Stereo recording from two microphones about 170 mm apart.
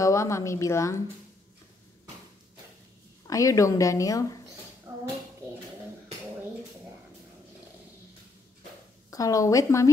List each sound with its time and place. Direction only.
0.0 s a woman's voice: 15° left (ahead or behind)
3.3 s a woman's voice: 20° left (ahead or behind)
4.9 s a sound: 15° right (ahead or behind)
9.1 s a woman's voice: 20° left (ahead or behind)